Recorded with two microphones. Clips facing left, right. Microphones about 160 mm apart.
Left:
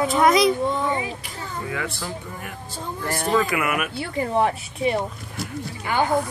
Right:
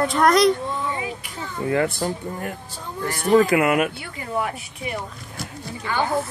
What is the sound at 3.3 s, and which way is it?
Speech, 35° right (ahead or behind).